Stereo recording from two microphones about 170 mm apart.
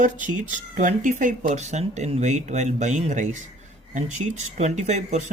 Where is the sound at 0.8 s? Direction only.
50° right (ahead or behind).